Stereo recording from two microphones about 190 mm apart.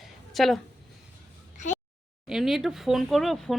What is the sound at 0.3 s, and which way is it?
Speech, centre (ahead or behind).